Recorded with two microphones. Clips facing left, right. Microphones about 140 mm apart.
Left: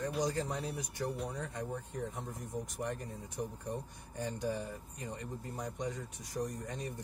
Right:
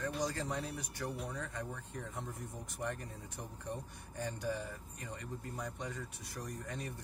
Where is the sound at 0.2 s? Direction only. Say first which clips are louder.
Left 3 dB; 15° left (ahead or behind).